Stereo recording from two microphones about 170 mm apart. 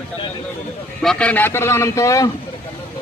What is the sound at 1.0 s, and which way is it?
A man's voice, 5° left (ahead or behind).